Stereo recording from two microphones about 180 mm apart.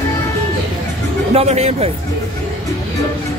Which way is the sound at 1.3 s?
35° right (ahead or behind).